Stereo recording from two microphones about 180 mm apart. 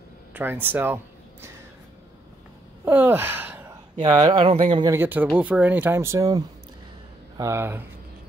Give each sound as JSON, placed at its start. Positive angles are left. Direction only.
{"t": 0.3, "sound": "speech", "side_deg": -10}
{"t": 2.8, "sound": "a sound", "side_deg": -10}
{"t": 4.0, "sound": "speech", "side_deg": -20}
{"t": 4.9, "sound": "speech", "side_deg": -10}